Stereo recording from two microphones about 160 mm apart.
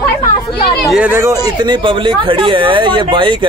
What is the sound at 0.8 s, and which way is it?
Speech, centre (ahead or behind).